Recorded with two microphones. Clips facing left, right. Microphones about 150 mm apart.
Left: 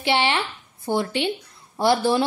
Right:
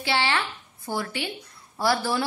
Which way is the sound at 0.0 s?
20° left (ahead or behind).